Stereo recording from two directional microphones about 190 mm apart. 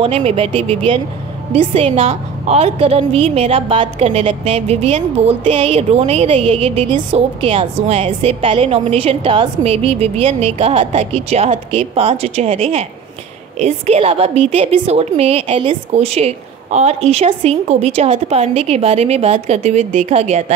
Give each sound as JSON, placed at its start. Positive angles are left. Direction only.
{"t": 0.0, "sound": "a woman's voice", "side_deg": -30}